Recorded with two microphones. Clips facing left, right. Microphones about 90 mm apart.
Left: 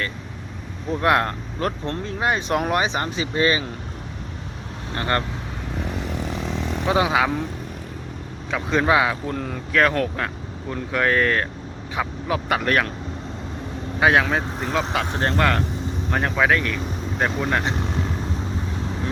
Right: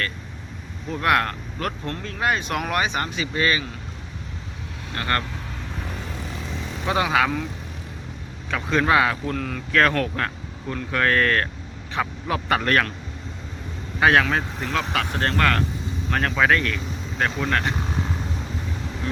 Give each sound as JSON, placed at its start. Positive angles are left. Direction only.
{"t": 1.0, "sound": "speech", "side_deg": 25}
{"t": 4.9, "sound": "speech", "side_deg": 25}
{"t": 6.8, "sound": "speech", "side_deg": 15}
{"t": 8.4, "sound": "speech", "side_deg": 15}
{"t": 9.7, "sound": "speech", "side_deg": 5}
{"t": 14.0, "sound": "speech", "side_deg": 15}